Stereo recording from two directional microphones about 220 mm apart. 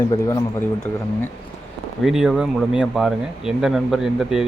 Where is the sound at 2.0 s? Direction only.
Centre (ahead or behind).